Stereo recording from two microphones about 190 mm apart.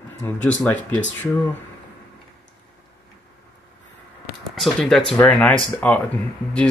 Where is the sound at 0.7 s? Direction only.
10° left (ahead or behind).